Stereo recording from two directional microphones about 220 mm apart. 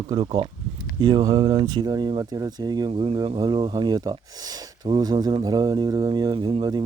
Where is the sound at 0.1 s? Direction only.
25° right (ahead or behind).